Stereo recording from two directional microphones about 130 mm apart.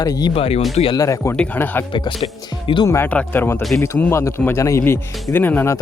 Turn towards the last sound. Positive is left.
turn(degrees=15)  # may be behind; listen again after turning